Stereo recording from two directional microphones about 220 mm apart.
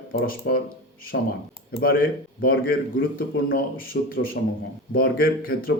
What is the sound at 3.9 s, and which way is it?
Speech, 40° left (ahead or behind).